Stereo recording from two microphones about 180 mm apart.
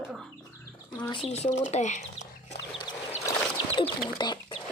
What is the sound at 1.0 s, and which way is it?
Speech, 25° left (ahead or behind).